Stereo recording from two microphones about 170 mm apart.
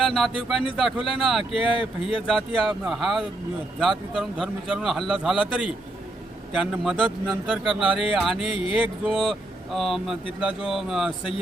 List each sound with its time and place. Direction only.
0.0 s a man's voice: centre (ahead or behind)
1.7 s speech: 30° left (ahead or behind)
2.2 s a man's voice: 5° right (ahead or behind)
8.5 s speech: 30° left (ahead or behind)
9.0 s a man's voice: 5° right (ahead or behind)